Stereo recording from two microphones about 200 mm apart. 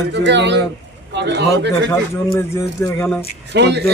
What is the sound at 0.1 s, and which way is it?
Speech, 60° right (ahead or behind).